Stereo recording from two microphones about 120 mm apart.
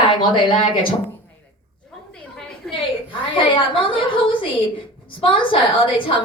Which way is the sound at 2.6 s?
5° left (ahead or behind).